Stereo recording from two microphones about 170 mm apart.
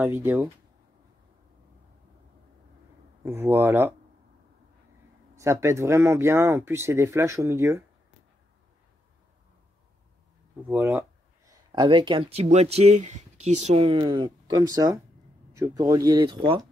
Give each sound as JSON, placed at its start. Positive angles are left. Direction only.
{"t": 0.0, "sound": "speech", "side_deg": -10}
{"t": 3.3, "sound": "speech", "side_deg": -15}
{"t": 5.3, "sound": "speech", "side_deg": -15}
{"t": 10.7, "sound": "speech", "side_deg": -15}
{"t": 11.7, "sound": "speech", "side_deg": -25}